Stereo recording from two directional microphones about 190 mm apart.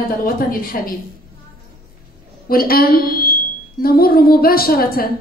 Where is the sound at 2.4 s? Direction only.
50° left (ahead or behind).